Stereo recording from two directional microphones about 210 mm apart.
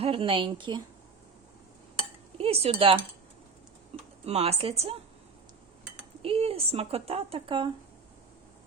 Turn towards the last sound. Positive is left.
turn(degrees=-25)  # may be behind; listen again after turning